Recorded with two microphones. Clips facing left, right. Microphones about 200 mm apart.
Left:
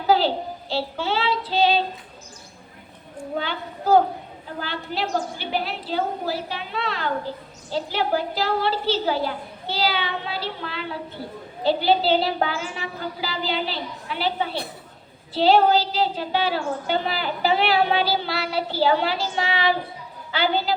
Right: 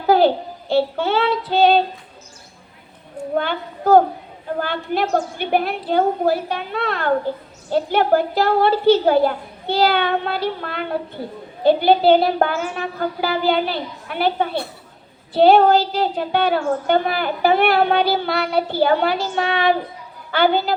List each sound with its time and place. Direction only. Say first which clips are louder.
0.1 s a sound: right 6 dB; 55° right (ahead or behind)
0.7 s a woman's voice: right 8 dB; 55° right (ahead or behind)
3.3 s a woman's voice: right 6 dB; 55° right (ahead or behind)